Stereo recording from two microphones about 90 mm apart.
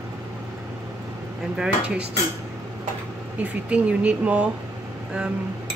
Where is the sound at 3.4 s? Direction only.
15° right (ahead or behind).